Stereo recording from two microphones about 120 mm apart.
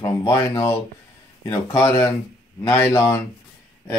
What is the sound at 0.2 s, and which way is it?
Speech, 40° left (ahead or behind).